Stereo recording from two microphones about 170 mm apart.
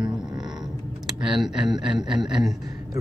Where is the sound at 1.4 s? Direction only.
5° right (ahead or behind).